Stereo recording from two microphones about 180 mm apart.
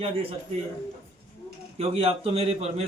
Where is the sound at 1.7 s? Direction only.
35° right (ahead or behind).